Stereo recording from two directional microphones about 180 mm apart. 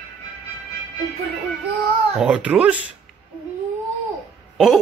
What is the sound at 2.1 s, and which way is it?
Speech, 5° right (ahead or behind).